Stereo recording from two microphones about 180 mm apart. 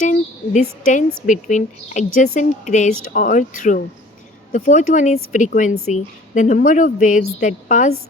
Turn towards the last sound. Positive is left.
turn(degrees=45)  # may be behind; listen again after turning